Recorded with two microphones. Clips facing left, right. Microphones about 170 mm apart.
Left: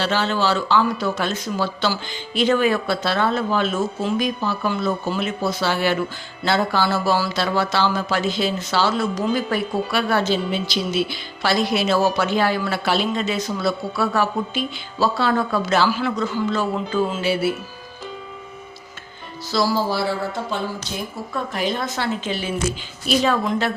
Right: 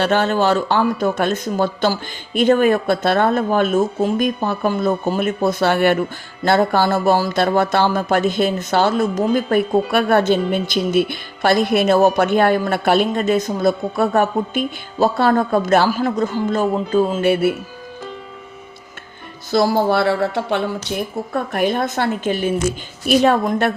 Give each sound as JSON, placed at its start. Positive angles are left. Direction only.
{"t": 0.0, "sound": "speech", "side_deg": -55}
{"t": 19.5, "sound": "speech", "side_deg": -55}